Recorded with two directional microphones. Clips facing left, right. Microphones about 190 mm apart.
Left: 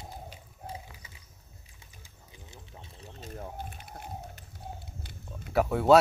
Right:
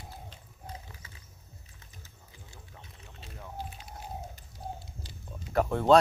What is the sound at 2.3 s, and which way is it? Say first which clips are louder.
Music: left 3 dB; 20° left (ahead or behind).